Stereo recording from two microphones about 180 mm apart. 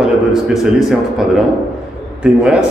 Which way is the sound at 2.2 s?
5° right (ahead or behind).